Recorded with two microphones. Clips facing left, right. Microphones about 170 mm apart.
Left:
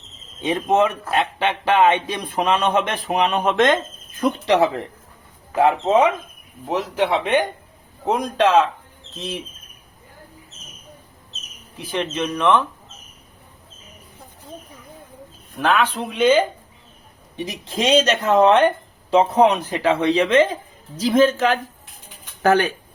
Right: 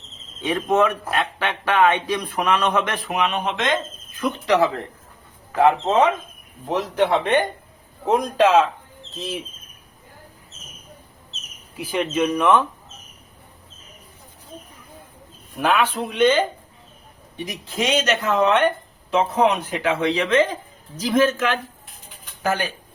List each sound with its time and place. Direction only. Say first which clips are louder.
0.4 s speech: left 1 dB; 20° left (ahead or behind); by 3.8 s 50° left (ahead or behind)
4.4 s speech: even; 25° left (ahead or behind)
6.7 s speech: right 1 dB; 5° left (ahead or behind)
11.8 s speech: right 3 dB; 10° right (ahead or behind)
15.5 s speech: left 1 dB; 5° right (ahead or behind)
17.3 s speech: left 2 dB; 25° left (ahead or behind)
22.4 s speech: left 7 dB; 65° left (ahead or behind)